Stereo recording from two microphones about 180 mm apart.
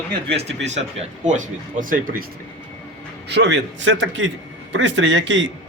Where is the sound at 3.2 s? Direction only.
75° right (ahead or behind).